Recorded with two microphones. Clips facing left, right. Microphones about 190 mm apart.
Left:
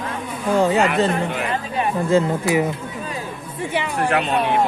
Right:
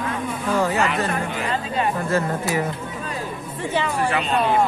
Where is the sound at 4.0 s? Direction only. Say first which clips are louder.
Left 4 dB; 60° left (ahead or behind).